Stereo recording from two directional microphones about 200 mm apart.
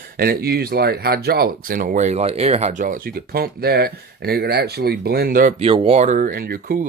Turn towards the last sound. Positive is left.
turn(degrees=-50)  # may be behind; listen again after turning